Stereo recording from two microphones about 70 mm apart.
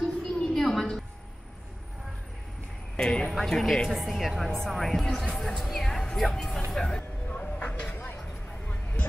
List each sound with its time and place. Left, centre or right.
0.0 s a sound: centre
3.0 s speech: centre
7.0 s vehicle: centre